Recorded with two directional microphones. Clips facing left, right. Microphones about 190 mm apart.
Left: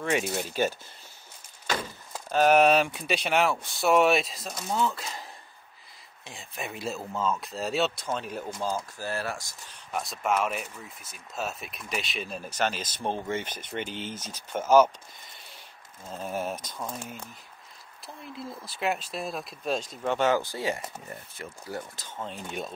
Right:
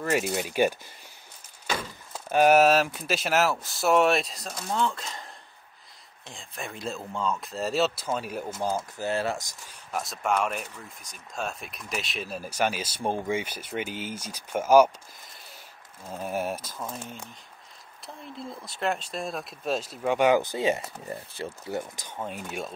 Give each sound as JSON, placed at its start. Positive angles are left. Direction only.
{"t": 0.0, "sound": "speech", "side_deg": 0}
{"t": 2.1, "sound": "speech", "side_deg": -10}
{"t": 8.6, "sound": "speech", "side_deg": -20}
{"t": 9.9, "sound": "speech", "side_deg": 0}
{"t": 16.1, "sound": "speech", "side_deg": -10}
{"t": 18.0, "sound": "speech", "side_deg": 5}